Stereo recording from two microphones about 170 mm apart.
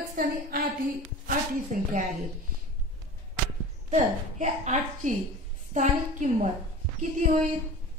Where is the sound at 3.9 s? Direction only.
45° right (ahead or behind).